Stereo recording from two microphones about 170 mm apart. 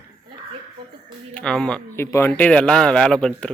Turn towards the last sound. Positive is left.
turn(degrees=5)  # may be behind; listen again after turning